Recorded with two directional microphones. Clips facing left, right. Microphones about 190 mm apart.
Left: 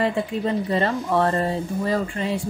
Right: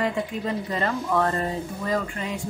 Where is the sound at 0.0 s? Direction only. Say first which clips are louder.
Left 3 dB; 30° left (ahead or behind).